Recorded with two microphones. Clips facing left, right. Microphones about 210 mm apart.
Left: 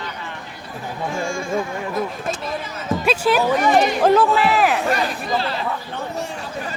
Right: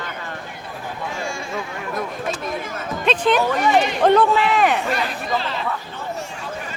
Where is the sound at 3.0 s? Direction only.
10° left (ahead or behind).